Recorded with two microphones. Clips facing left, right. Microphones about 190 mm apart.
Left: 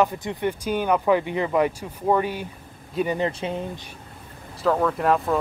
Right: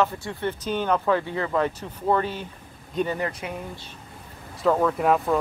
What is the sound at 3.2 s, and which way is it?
Speech, 25° left (ahead or behind).